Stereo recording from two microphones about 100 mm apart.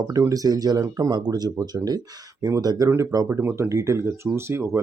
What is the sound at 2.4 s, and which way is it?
Speech, 30° right (ahead or behind).